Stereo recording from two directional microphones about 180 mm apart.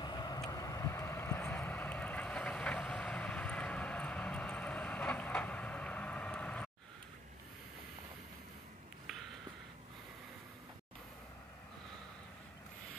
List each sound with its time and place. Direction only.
0.0 s vehicle: 25° left (ahead or behind)
0.5 s boat: 20° left (ahead or behind)